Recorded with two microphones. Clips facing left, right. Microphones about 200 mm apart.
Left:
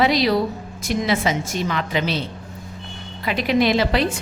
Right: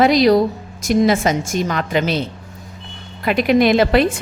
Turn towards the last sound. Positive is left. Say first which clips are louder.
# right 5 dB
turn(degrees=-55)  # may be behind; listen again after turning